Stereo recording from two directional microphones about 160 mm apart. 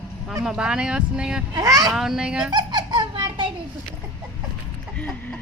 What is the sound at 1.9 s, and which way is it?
Speech, 5° right (ahead or behind).